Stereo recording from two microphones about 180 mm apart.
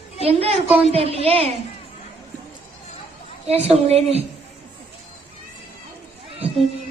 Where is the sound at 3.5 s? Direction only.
35° right (ahead or behind).